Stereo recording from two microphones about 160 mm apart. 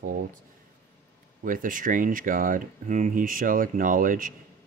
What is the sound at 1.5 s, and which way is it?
Speech, 55° right (ahead or behind).